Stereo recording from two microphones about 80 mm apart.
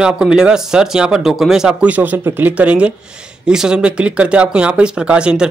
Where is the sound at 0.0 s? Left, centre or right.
Centre.